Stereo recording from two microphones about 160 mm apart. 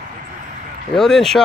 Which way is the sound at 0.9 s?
Centre (ahead or behind).